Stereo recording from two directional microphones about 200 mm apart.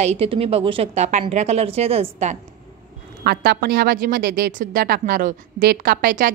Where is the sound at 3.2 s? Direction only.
55° right (ahead or behind).